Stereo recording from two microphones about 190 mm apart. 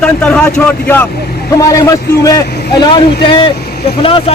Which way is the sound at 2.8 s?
25° left (ahead or behind).